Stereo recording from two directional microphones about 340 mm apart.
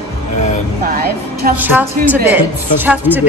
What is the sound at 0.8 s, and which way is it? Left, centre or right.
Speech, right.